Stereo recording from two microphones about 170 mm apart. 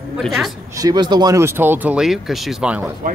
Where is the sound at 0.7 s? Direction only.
25° right (ahead or behind); by 2.9 s 5° right (ahead or behind).